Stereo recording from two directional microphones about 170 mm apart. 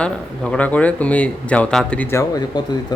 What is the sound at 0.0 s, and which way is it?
Speech, 5° left (ahead or behind).